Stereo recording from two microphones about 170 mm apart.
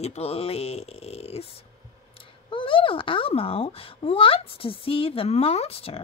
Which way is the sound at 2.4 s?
30° left (ahead or behind).